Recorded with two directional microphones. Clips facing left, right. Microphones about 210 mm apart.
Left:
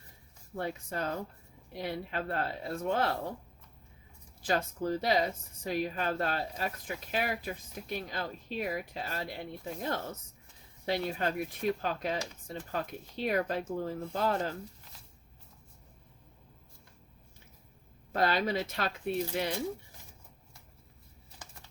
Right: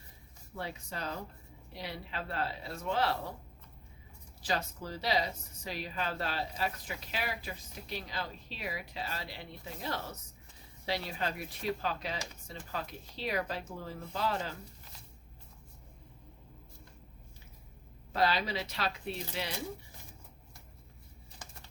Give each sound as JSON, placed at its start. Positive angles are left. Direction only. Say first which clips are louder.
{"t": 0.5, "sound": "speech", "louder": "left 5 dB", "side_deg": 50}
{"t": 4.4, "sound": "speech", "louder": "left 5 dB", "side_deg": 50}
{"t": 18.1, "sound": "speech", "louder": "left 2 dB", "side_deg": 50}